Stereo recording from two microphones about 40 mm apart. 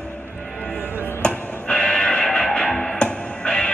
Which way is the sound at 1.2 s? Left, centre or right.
Left.